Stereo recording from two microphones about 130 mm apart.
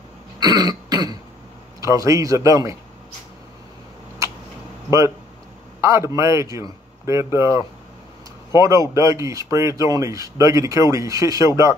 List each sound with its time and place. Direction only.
0.4 s throat clearing: 30° right (ahead or behind)
1.8 s speech: 25° right (ahead or behind)
5.8 s speech: 20° right (ahead or behind)